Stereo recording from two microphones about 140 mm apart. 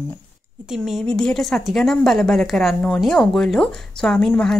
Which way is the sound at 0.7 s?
Centre (ahead or behind).